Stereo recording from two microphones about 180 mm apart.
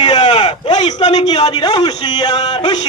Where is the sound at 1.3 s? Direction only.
25° left (ahead or behind).